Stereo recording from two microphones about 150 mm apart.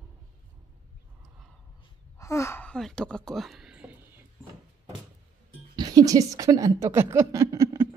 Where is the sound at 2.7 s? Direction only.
5° left (ahead or behind).